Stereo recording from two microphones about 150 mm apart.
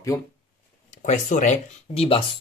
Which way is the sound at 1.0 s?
55° left (ahead or behind).